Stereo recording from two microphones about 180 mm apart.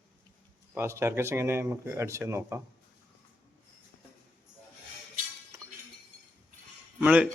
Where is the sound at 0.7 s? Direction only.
15° right (ahead or behind).